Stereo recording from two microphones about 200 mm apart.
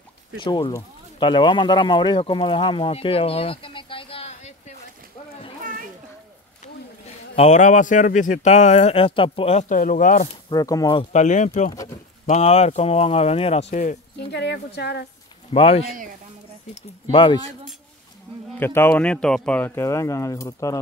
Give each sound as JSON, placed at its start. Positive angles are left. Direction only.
{"t": 0.4, "sound": "speech", "side_deg": 20}
{"t": 7.3, "sound": "speech", "side_deg": 35}
{"t": 10.5, "sound": "speech", "side_deg": 20}
{"t": 11.1, "sound": "speech", "side_deg": 35}
{"t": 11.7, "sound": "pigeon", "side_deg": 15}
{"t": 12.3, "sound": "speech", "side_deg": 30}
{"t": 14.3, "sound": "speech", "side_deg": 55}
{"t": 15.5, "sound": "speech", "side_deg": 25}
{"t": 18.6, "sound": "speech", "side_deg": 10}